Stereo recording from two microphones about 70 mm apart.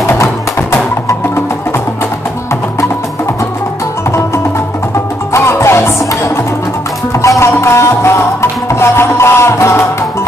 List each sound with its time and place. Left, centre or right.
0.2 s music: left
5.3 s music: left
7.2 s music: left